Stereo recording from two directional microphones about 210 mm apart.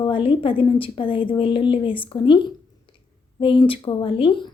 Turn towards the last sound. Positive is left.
turn(degrees=25)  # may be behind; listen again after turning